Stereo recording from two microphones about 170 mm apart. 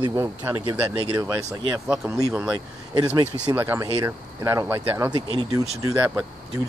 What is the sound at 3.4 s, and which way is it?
Speech, 15° right (ahead or behind).